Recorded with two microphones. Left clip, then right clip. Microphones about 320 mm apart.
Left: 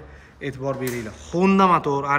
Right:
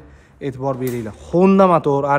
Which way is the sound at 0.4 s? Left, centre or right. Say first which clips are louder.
Right 4 dB; centre.